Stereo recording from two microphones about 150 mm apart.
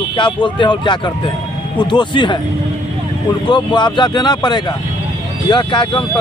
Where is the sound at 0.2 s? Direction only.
35° left (ahead or behind).